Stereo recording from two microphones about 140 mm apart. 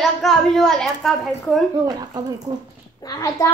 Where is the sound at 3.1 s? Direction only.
20° left (ahead or behind).